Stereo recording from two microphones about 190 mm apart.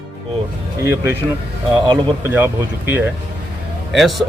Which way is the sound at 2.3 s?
10° right (ahead or behind).